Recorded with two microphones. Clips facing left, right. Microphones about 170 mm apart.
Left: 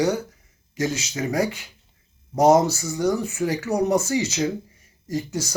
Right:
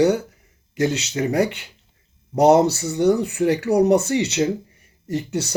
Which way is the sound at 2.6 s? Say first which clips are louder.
Right 5 dB; 70° right (ahead or behind).